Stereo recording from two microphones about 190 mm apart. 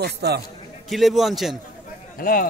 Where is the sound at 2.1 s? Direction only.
50° left (ahead or behind).